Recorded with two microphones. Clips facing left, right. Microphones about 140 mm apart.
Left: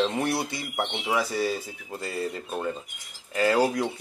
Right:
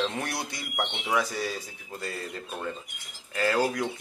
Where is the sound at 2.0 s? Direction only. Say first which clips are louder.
Left 5 dB; 20° left (ahead or behind).